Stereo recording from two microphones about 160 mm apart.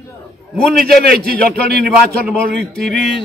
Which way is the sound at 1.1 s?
85° right.